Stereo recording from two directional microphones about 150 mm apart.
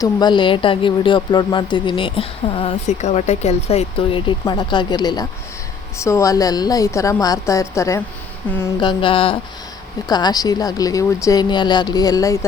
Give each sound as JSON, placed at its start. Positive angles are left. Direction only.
{"t": 0.0, "sound": "speech", "side_deg": 30}
{"t": 2.8, "sound": "speech", "side_deg": 50}
{"t": 8.8, "sound": "speech", "side_deg": 35}